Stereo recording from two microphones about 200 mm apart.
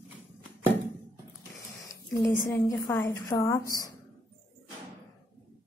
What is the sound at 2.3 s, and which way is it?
A woman's voice, 10° left (ahead or behind).